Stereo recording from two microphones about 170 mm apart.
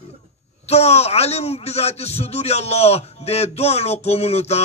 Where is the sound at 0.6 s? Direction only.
40° left (ahead or behind).